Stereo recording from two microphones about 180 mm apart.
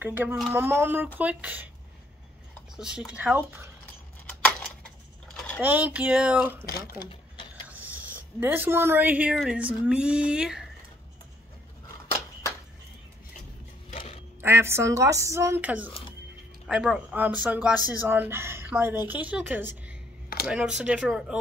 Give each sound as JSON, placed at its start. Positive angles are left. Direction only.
{"t": 0.0, "sound": "speech", "side_deg": -10}
{"t": 2.7, "sound": "speech", "side_deg": -5}
{"t": 4.3, "sound": "a sound", "side_deg": 5}
{"t": 5.6, "sound": "speech", "side_deg": -10}
{"t": 7.6, "sound": "speech", "side_deg": -10}
{"t": 13.9, "sound": "quack", "side_deg": 30}
{"t": 14.4, "sound": "speech", "side_deg": -15}